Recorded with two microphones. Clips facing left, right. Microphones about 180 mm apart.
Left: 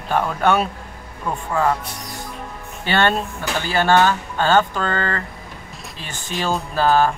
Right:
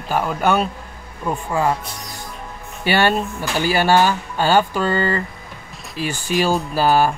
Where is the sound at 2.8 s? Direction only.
10° right (ahead or behind).